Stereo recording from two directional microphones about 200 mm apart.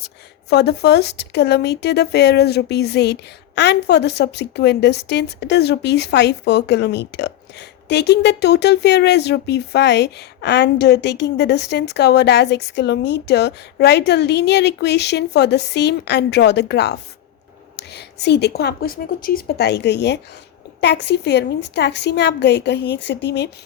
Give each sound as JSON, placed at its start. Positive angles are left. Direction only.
{"t": 0.5, "sound": "speech", "side_deg": 55}